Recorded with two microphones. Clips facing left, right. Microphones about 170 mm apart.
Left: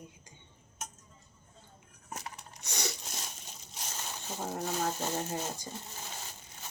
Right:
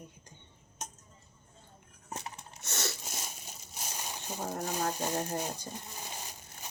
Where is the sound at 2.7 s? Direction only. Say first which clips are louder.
Even; 15° left (ahead or behind).